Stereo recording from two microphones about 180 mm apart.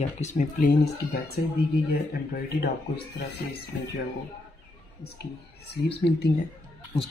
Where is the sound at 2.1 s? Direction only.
60° left (ahead or behind).